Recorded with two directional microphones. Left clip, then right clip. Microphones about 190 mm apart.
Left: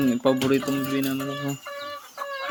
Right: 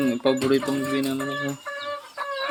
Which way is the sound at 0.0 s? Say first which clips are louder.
Even; 30° left (ahead or behind).